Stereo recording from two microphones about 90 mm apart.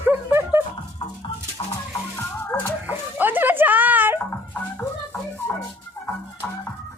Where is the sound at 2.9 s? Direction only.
20° right (ahead or behind).